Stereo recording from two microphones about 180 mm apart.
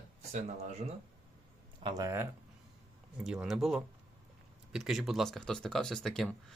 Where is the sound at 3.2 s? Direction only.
5° right (ahead or behind).